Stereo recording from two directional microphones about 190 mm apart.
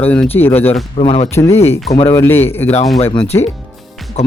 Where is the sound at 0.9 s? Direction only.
30° left (ahead or behind).